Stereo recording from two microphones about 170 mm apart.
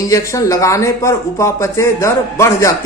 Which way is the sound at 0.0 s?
20° left (ahead or behind).